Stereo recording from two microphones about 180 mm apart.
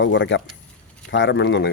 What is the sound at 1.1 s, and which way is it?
Speech, 80° left.